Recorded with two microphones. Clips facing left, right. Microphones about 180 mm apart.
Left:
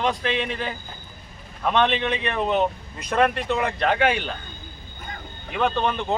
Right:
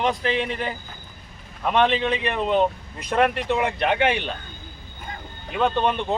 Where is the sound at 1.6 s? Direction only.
15° right (ahead or behind).